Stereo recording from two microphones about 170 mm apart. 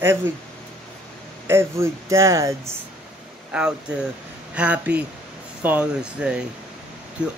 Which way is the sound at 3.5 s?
5° right (ahead or behind).